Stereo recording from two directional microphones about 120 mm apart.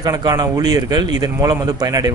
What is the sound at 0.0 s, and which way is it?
Speech, 30° right (ahead or behind).